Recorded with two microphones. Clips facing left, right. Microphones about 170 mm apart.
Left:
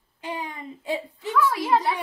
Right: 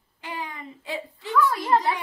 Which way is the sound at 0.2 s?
20° left (ahead or behind).